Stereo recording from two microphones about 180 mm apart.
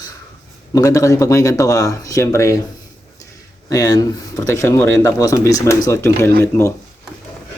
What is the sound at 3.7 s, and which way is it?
Speech, 20° left (ahead or behind).